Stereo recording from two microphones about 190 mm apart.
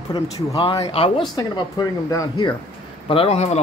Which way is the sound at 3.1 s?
30° left (ahead or behind).